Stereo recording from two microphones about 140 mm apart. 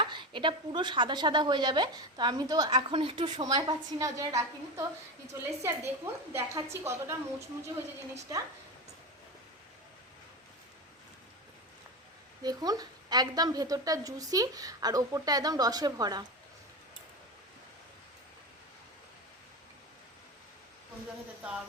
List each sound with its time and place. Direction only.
0.0 s a woman's voice: 35° right (ahead or behind); by 7.4 s 20° right (ahead or behind)
12.4 s a woman's voice: 30° right (ahead or behind)